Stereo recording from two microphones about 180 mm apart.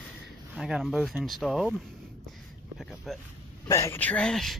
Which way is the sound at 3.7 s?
15° left (ahead or behind).